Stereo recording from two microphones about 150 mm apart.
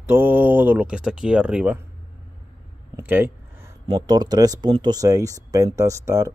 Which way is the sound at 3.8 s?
25° right (ahead or behind).